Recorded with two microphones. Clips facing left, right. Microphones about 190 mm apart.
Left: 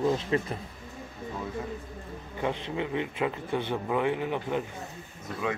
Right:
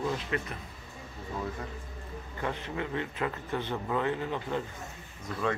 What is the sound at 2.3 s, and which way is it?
A man's voice, 15° left (ahead or behind).